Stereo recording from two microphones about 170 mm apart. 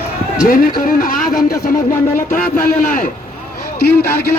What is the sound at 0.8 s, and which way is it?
Music, 55° left (ahead or behind).